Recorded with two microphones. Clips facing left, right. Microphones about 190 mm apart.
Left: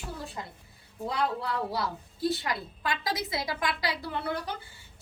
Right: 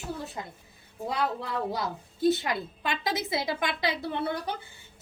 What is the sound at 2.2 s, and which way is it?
A woman's voice, 20° right (ahead or behind).